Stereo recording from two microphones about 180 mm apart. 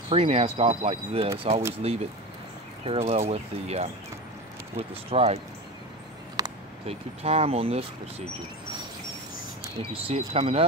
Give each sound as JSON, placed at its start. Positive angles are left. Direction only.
{"t": 0.1, "sound": "speech", "side_deg": -35}
{"t": 6.4, "sound": "a sound", "side_deg": -20}
{"t": 6.9, "sound": "speech", "side_deg": -35}
{"t": 9.8, "sound": "speech", "side_deg": -35}